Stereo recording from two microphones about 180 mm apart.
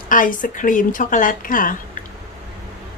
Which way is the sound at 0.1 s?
50° left (ahead or behind).